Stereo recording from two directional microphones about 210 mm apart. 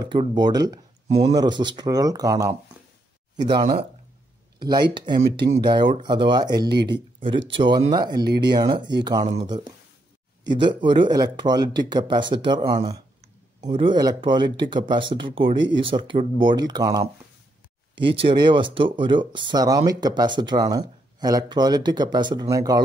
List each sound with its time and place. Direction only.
0.0 s speech: 20° right (ahead or behind)